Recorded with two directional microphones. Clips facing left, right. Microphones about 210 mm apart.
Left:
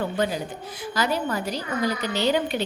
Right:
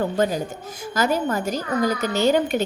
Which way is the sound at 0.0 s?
45° right (ahead or behind).